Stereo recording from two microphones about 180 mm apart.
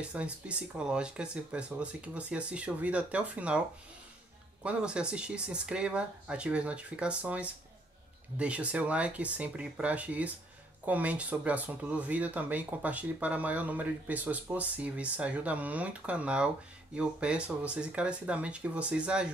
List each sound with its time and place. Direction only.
0.1 s speech: 5° right (ahead or behind)
4.6 s speech: 5° right (ahead or behind)